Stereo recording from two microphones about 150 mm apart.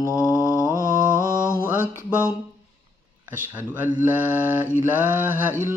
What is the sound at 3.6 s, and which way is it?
Mantra, 15° right (ahead or behind).